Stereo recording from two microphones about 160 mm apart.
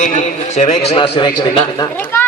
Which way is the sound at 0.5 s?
40° left (ahead or behind).